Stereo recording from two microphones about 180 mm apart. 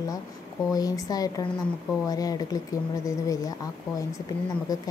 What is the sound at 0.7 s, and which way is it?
A woman's voice, 20° left (ahead or behind).